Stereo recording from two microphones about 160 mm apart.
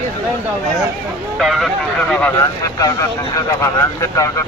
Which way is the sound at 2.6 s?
20° left (ahead or behind).